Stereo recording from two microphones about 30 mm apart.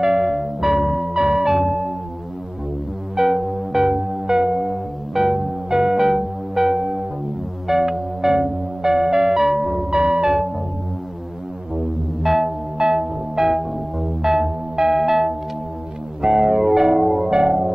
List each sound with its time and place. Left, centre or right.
0.0 s music: centre
1.5 s music: centre
3.2 s music: centre
3.8 s music: centre
4.6 s music: centre
9.8 s music: right
12.2 s music: centre
12.7 s music: right
13.4 s music: centre